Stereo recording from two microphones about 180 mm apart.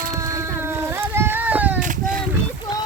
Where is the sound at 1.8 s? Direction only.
45° right (ahead or behind).